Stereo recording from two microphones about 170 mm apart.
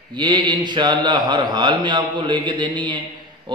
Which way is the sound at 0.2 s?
25° right (ahead or behind).